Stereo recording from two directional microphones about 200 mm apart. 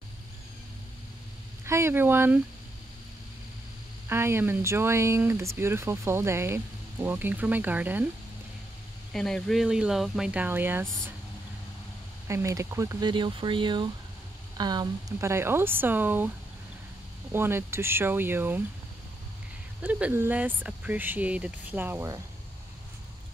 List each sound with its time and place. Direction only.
1.7 s speech: 10° right (ahead or behind)
4.1 s speech: 10° right (ahead or behind)
9.1 s speech: centre (ahead or behind)
12.3 s speech: 15° right (ahead or behind)
17.3 s speech: 10° right (ahead or behind)
19.8 s speech: 10° right (ahead or behind)